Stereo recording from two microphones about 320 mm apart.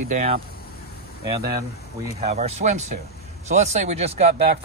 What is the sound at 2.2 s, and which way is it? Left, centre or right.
Speech, centre.